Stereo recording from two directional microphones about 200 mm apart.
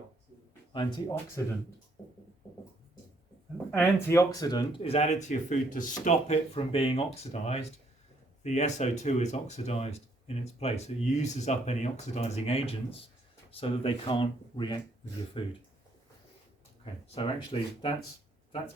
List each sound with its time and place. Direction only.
0.7 s speech: 25° left (ahead or behind)
3.7 s speech: 10° left (ahead or behind)
16.8 s speech: 25° left (ahead or behind)